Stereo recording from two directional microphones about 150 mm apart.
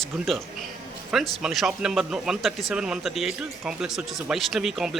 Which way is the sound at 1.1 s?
5° right (ahead or behind).